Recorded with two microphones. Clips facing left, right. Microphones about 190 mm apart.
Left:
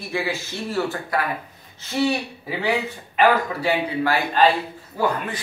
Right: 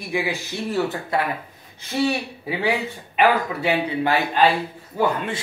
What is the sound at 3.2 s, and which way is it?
Speech, 20° right (ahead or behind).